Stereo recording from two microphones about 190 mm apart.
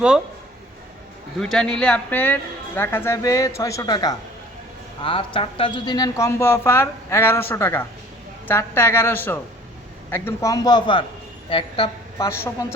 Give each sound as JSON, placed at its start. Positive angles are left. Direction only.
{"t": 1.4, "sound": "a man's voice", "side_deg": 5}
{"t": 12.3, "sound": "speech", "side_deg": 15}